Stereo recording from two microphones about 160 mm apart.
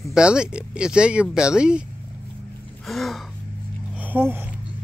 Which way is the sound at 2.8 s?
Centre (ahead or behind).